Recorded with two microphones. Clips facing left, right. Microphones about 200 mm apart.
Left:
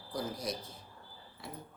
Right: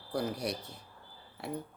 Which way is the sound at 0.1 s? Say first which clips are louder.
Right 4 dB; 70° right (ahead or behind).